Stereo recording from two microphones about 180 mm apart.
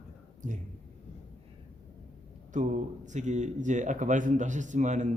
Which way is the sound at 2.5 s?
40° right (ahead or behind).